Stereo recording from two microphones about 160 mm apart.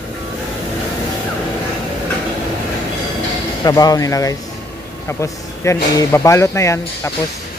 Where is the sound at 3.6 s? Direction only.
25° left (ahead or behind).